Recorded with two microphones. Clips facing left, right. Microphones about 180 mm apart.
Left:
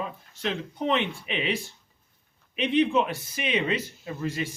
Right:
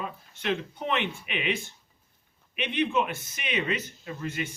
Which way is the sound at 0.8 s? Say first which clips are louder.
Left 3 dB; 30° left (ahead or behind).